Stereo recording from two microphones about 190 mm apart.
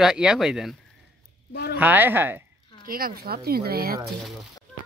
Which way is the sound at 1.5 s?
55° left (ahead or behind).